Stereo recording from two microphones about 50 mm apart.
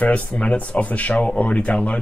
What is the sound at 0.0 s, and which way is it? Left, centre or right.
Speech, left.